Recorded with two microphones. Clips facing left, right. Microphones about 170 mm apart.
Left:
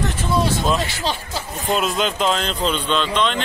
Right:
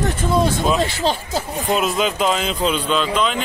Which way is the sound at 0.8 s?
45° right (ahead or behind).